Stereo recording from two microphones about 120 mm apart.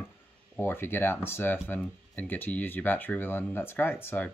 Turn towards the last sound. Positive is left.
turn(degrees=15)  # may be behind; listen again after turning